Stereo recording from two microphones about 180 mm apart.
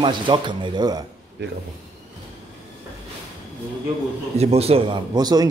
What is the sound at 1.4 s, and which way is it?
Speech, 75° right (ahead or behind).